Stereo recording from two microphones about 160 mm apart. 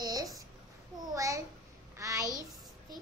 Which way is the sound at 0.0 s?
25° right (ahead or behind).